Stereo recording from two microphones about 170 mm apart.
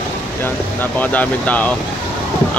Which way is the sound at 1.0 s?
10° left (ahead or behind).